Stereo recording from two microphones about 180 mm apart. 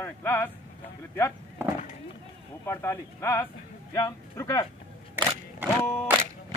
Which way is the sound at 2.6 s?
15° left (ahead or behind).